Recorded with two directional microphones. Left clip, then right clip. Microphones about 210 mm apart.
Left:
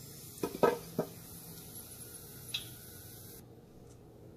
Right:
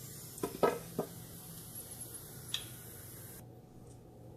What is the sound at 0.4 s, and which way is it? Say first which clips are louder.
Chicken: left 2 dB; 10° left (ahead or behind).